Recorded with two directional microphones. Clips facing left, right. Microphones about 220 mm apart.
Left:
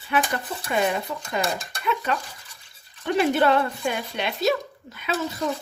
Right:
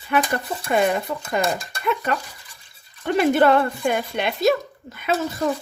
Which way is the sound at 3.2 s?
50° right (ahead or behind).